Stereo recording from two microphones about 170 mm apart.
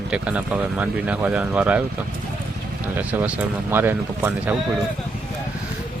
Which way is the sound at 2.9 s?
10° right (ahead or behind).